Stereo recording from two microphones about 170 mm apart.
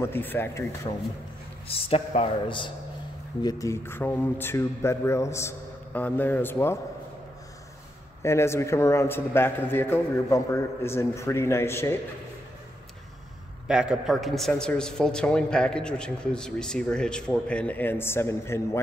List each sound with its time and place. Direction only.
0.0 s a man's voice: 10° left (ahead or behind)
1.7 s speech: 35° left (ahead or behind)
3.4 s a man's voice: 20° left (ahead or behind)
8.2 s a man's voice: 15° left (ahead or behind)
13.7 s a man's voice: 5° right (ahead or behind); by 18.8 s 15° left (ahead or behind)